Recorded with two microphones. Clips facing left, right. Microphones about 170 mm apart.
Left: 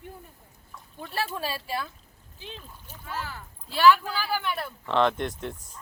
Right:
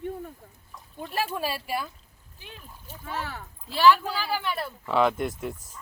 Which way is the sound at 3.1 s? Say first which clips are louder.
Right 2 dB; 65° right (ahead or behind).